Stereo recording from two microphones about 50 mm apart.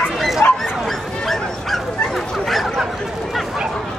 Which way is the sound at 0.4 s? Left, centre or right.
Left.